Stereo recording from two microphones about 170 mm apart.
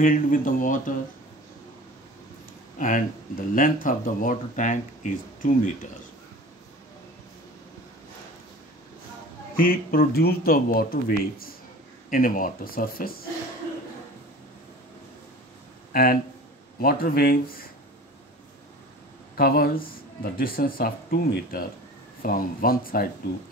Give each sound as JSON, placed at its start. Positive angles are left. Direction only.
{"t": 0.0, "sound": "speech", "side_deg": 55}
{"t": 2.8, "sound": "speech", "side_deg": 55}
{"t": 9.6, "sound": "speech", "side_deg": 60}
{"t": 15.9, "sound": "speech", "side_deg": 60}
{"t": 19.3, "sound": "speech", "side_deg": 65}